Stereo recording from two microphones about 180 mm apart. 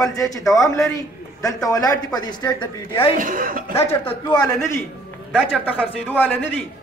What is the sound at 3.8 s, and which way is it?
Speech, 15° left (ahead or behind).